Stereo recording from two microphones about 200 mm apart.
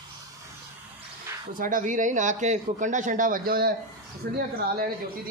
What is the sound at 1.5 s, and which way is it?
Speech, 45° right (ahead or behind).